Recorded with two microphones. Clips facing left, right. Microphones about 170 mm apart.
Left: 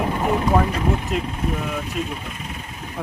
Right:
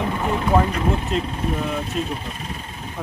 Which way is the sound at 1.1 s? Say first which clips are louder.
Right 1 dB; 10° left (ahead or behind).